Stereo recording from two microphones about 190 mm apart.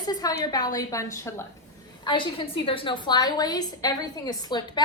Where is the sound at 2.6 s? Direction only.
25° left (ahead or behind).